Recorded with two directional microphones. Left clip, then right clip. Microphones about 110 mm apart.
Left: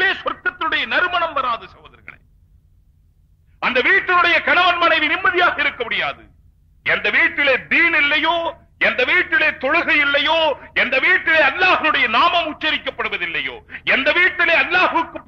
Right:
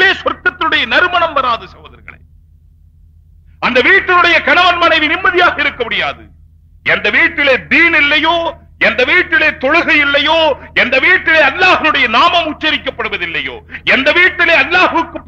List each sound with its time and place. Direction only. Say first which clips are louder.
0.0 s a sound: right 8 dB; 30° right (ahead or behind)
3.5 s a man's voice: right 6 dB; 30° right (ahead or behind)
13.1 s a man's voice: right 5 dB; 40° right (ahead or behind)